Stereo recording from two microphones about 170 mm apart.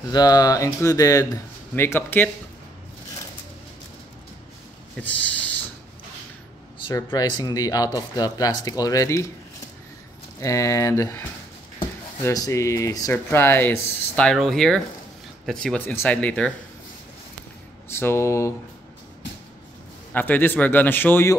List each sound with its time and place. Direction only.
0.1 s speech: 25° left (ahead or behind)
5.0 s speech: 10° left (ahead or behind)
6.9 s speech: 15° left (ahead or behind)
10.4 s speech: 15° left (ahead or behind)
17.9 s speech: 15° left (ahead or behind)
20.1 s speech: 10° left (ahead or behind)